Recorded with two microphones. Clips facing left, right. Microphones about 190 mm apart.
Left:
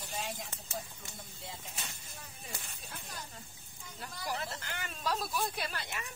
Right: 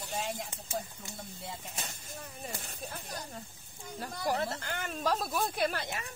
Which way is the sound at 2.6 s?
40° right (ahead or behind).